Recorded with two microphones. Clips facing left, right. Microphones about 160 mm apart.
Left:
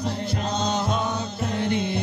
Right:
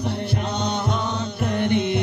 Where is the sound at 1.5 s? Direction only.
65° right (ahead or behind).